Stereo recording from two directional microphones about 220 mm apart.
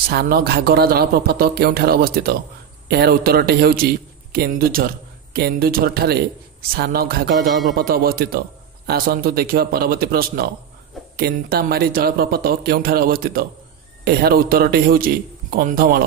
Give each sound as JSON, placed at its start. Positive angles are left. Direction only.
{"t": 0.1, "sound": "a man's voice", "side_deg": -45}